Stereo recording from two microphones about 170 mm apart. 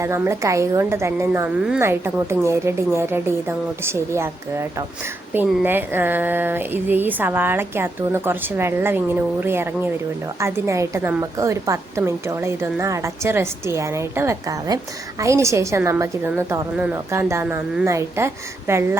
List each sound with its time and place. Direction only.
0.0 s speech: 15° right (ahead or behind)